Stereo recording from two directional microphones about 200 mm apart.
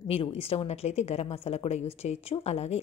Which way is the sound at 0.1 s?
30° left (ahead or behind).